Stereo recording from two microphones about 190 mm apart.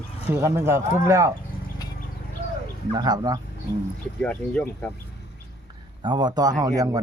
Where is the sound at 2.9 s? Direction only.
20° right (ahead or behind).